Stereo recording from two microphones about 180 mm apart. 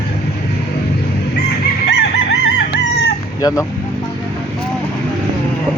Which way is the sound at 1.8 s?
75° left (ahead or behind).